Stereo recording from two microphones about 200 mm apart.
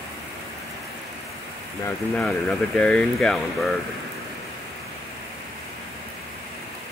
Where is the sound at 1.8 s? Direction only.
5° left (ahead or behind).